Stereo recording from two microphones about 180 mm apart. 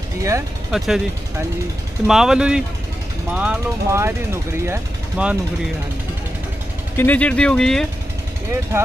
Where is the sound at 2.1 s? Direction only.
5° right (ahead or behind).